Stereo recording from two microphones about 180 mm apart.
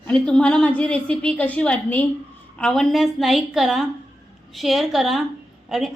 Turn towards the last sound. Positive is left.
turn(degrees=0)  # may be behind; listen again after turning